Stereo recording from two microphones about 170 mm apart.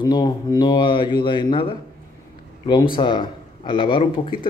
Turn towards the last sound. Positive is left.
turn(degrees=30)  # may be behind; listen again after turning